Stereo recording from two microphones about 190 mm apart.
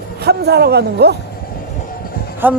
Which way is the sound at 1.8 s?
50° left (ahead or behind).